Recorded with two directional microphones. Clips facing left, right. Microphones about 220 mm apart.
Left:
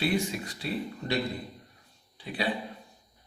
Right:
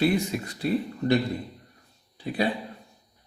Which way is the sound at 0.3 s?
50° right (ahead or behind).